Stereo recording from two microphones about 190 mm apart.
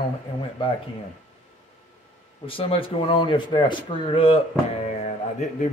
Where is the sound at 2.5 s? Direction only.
30° left (ahead or behind).